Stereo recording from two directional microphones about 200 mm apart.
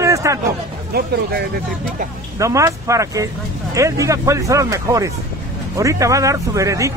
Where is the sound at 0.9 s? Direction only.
50° right (ahead or behind).